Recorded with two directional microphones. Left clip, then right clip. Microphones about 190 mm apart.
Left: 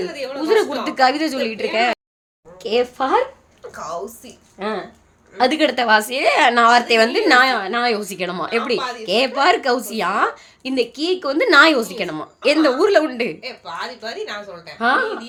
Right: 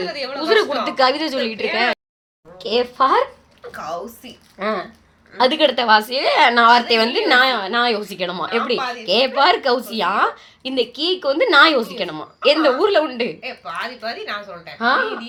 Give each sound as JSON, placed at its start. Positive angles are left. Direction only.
{"t": 0.1, "sound": "a woman's voice", "side_deg": 20}
{"t": 4.6, "sound": "a woman's voice", "side_deg": 10}